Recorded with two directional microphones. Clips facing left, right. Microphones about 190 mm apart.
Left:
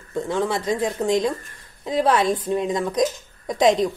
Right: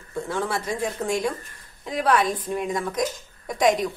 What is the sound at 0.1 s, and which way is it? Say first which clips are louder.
Speech: left 4 dB; 20° left (ahead or behind).